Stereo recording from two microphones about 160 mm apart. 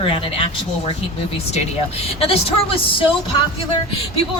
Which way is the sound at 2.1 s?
35° left (ahead or behind).